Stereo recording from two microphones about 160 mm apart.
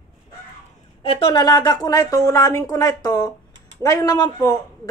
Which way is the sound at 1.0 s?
35° left (ahead or behind).